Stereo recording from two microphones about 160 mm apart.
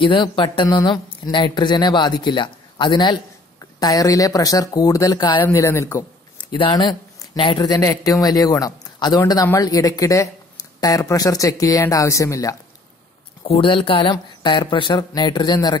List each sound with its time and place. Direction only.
0.0 s speech: 30° left (ahead or behind)
6.5 s speech: 30° left (ahead or behind)
13.4 s speech: 35° left (ahead or behind)